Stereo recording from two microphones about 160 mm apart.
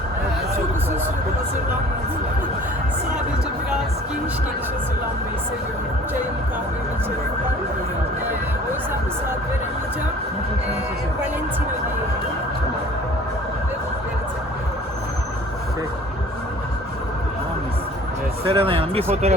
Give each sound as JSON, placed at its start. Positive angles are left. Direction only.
{"t": 18.4, "sound": "speech", "side_deg": -35}